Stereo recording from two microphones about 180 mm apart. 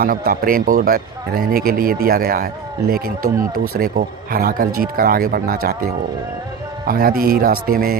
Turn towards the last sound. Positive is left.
turn(degrees=-55)  # may be behind; listen again after turning